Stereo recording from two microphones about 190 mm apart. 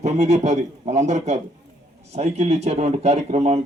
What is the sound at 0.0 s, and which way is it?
Speech, 35° right (ahead or behind).